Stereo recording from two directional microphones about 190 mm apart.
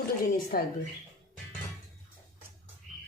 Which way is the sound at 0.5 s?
50° left (ahead or behind).